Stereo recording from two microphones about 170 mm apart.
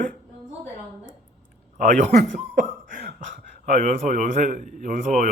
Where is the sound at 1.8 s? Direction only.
45° right (ahead or behind).